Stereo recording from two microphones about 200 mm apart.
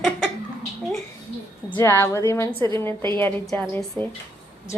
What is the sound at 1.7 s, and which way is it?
Speech, 10° left (ahead or behind).